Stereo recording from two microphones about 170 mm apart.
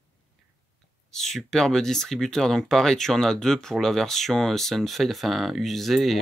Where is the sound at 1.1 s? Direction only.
Centre (ahead or behind).